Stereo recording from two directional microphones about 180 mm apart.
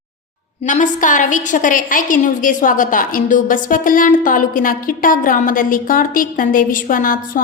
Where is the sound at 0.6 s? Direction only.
45° left (ahead or behind).